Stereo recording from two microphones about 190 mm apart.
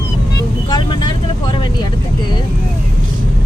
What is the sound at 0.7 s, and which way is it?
Vehicle, 25° left (ahead or behind).